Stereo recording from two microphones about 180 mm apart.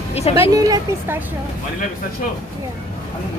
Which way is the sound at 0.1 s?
35° left (ahead or behind).